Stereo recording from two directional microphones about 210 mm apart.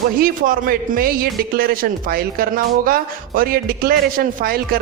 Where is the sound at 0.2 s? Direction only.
40° right (ahead or behind).